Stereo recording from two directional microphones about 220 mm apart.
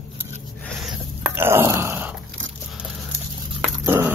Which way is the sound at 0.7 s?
Centre (ahead or behind).